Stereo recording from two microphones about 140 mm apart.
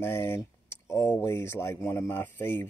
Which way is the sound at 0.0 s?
15° left (ahead or behind).